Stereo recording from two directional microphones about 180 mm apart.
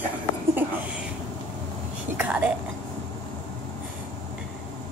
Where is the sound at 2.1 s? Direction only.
5° right (ahead or behind).